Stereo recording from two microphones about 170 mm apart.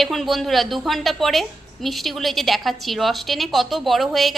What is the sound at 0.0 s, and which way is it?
A woman's voice, centre (ahead or behind).